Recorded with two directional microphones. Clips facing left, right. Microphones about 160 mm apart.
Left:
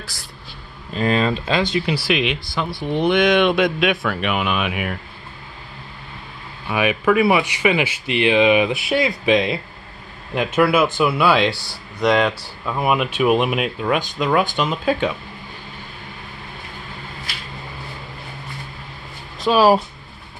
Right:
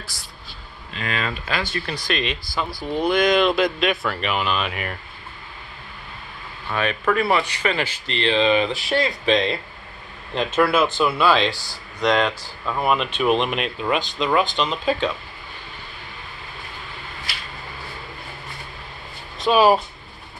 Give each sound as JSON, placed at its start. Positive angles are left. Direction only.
{"t": 0.9, "sound": "speech", "side_deg": 35}
{"t": 1.6, "sound": "speech", "side_deg": 15}
{"t": 6.7, "sound": "speech", "side_deg": 10}
{"t": 19.3, "sound": "speech", "side_deg": 0}